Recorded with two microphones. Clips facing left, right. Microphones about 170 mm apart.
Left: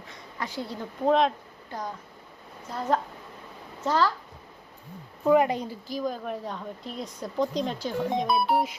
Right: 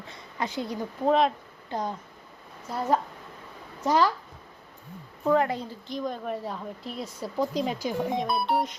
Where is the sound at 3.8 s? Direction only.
15° right (ahead or behind).